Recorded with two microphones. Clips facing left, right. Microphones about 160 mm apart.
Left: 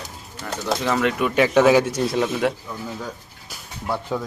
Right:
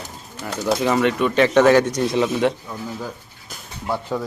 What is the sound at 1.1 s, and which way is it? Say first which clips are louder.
Speech: right 2 dB; 10° left (ahead or behind).